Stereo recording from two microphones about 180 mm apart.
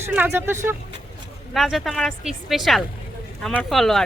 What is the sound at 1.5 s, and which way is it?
Speech, centre (ahead or behind).